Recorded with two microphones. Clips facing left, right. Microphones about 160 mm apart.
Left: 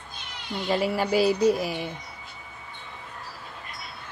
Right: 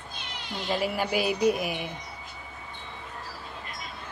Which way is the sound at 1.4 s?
15° right (ahead or behind).